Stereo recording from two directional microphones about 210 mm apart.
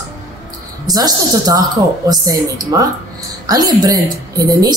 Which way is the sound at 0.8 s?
20° right (ahead or behind).